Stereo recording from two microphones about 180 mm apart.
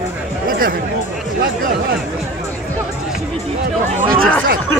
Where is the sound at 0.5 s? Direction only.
50° right (ahead or behind).